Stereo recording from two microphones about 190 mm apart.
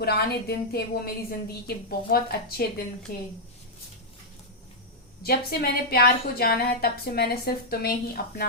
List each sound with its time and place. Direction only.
0.0 s a woman's voice: 55° left (ahead or behind)
5.2 s a woman's voice: 55° left (ahead or behind)